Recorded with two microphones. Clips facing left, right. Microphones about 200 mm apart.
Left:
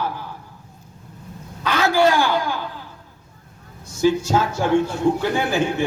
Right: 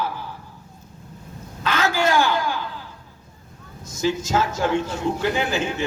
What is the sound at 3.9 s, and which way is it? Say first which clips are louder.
Speech: left 5 dB; 15° left (ahead or behind).